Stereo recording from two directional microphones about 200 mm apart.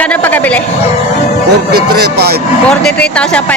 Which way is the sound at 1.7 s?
50° right (ahead or behind).